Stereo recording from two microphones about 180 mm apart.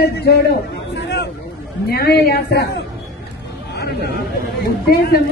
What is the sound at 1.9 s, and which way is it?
Speech, 60° left (ahead or behind).